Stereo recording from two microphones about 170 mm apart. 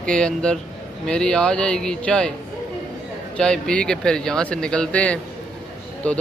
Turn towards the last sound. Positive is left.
turn(degrees=5)  # may be behind; listen again after turning